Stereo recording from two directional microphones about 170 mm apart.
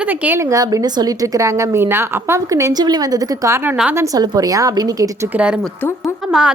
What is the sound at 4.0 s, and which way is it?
Speech, 20° right (ahead or behind).